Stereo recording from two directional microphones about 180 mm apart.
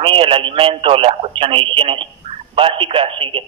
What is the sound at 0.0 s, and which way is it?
Speech, 30° right (ahead or behind).